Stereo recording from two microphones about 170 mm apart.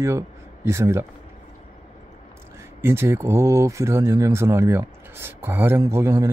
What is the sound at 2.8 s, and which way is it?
Speech, 15° right (ahead or behind).